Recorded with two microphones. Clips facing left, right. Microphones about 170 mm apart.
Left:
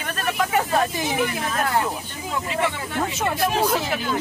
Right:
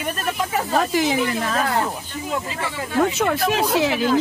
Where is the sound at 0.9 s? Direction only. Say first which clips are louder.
Right 4 dB; 90° right.